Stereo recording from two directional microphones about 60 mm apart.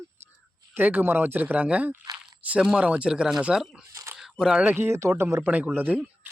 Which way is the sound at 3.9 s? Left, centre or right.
Right.